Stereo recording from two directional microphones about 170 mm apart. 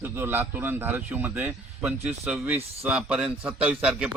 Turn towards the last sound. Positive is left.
turn(degrees=-5)  # may be behind; listen again after turning